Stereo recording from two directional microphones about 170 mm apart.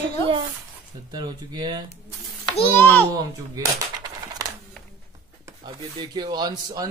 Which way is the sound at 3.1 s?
20° right (ahead or behind).